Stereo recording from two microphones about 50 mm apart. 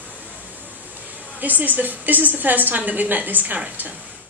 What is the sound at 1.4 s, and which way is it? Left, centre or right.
A woman's voice, right.